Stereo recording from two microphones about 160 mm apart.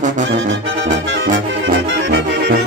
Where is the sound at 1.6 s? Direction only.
90° right.